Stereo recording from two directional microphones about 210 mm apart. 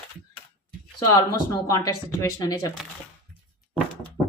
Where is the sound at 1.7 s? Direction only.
15° left (ahead or behind).